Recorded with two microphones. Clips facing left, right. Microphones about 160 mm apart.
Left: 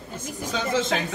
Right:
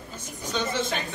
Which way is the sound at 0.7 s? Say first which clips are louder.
Left 5 dB; 90° left.